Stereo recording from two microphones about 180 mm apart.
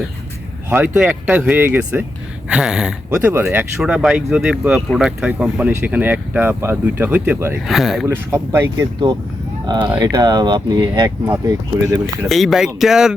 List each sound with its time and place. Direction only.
0.7 s speech: 10° right (ahead or behind)
7.7 s speech: centre (ahead or behind)
8.0 s speech: 15° right (ahead or behind)
10.0 s speech: 20° right (ahead or behind)
12.3 s speech: centre (ahead or behind)